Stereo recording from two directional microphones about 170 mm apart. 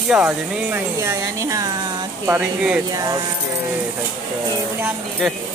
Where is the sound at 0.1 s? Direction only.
5° right (ahead or behind).